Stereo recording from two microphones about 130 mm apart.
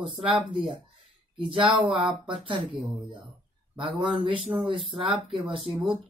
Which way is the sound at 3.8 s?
45° right (ahead or behind).